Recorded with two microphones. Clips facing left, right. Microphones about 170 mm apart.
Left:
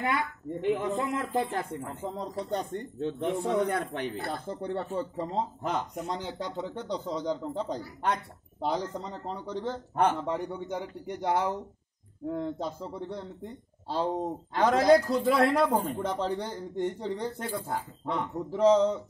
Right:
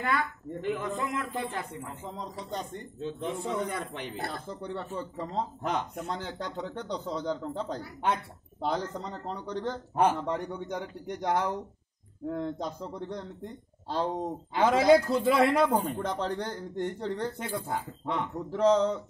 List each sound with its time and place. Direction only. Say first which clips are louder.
0.6 s speech: left 3 dB; 25° left (ahead or behind); by 2.2 s 40° left (ahead or behind)
2.5 s speech: left 4 dB; 60° left (ahead or behind)
4.9 s speech: left 3 dB; 30° left (ahead or behind)
5.6 s a man's voice: even; 5° left (ahead or behind)
14.5 s a man's voice: even; 5° right (ahead or behind)
17.4 s a man's voice: even; centre (ahead or behind)